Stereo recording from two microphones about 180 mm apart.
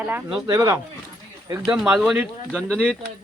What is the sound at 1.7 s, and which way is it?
Speech, 5° right (ahead or behind).